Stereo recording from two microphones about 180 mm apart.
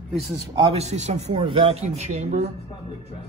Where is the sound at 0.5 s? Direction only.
30° right (ahead or behind).